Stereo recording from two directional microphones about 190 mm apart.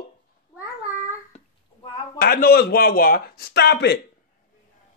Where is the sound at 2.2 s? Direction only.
50° left (ahead or behind).